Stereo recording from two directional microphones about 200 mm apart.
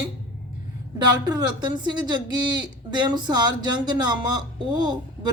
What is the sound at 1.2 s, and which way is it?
Speech, 20° right (ahead or behind).